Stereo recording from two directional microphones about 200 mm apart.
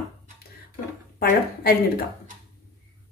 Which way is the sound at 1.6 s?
50° left (ahead or behind).